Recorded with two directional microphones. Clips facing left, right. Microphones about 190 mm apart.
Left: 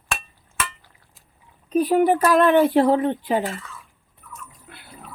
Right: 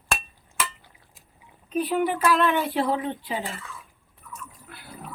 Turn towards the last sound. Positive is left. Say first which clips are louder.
# left 8 dB
turn(degrees=50)  # may be behind; listen again after turning